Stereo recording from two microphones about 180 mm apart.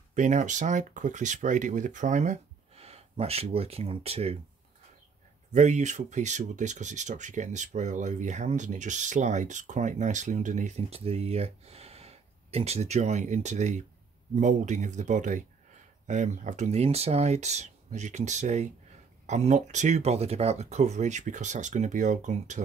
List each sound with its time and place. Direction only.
0.1 s speech: 40° right (ahead or behind)
5.5 s speech: 40° right (ahead or behind)